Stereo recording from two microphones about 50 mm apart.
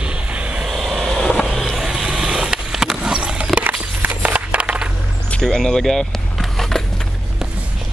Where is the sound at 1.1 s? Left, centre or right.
Centre.